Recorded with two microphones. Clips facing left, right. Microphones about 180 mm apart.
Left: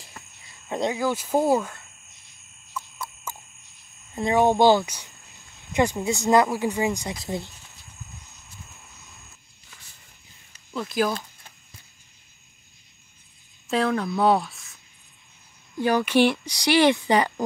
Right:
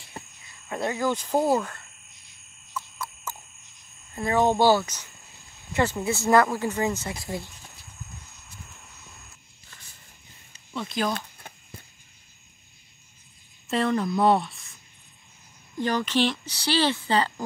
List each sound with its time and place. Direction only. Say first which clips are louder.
0.2 s cricket: right 6 dB; 30° right (ahead or behind)
0.7 s speech: left 2 dB; 15° left (ahead or behind)
2.8 s a sound: even; 10° left (ahead or behind)
3.3 s cricket: left 1 dB; 10° left (ahead or behind)
4.1 s speech: left 2 dB; 15° left (ahead or behind)
10.7 s speech: left 3 dB; centre (ahead or behind)
11.1 s a sound: right 1 dB; 55° right (ahead or behind)
13.7 s speech: left 1 dB; centre (ahead or behind)
15.8 s speech: left 5 dB; 10° left (ahead or behind)